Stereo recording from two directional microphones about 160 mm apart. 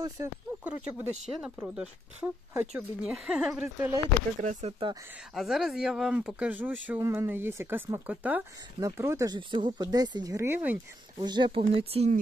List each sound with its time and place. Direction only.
0.7 s speech: 10° right (ahead or behind)
4.4 s speech: 50° right (ahead or behind)
5.3 s speech: centre (ahead or behind)
11.1 s speech: 25° right (ahead or behind)